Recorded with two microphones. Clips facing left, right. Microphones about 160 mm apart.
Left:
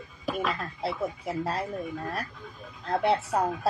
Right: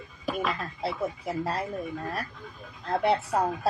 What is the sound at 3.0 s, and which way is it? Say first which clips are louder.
Speech: even; centre (ahead or behind).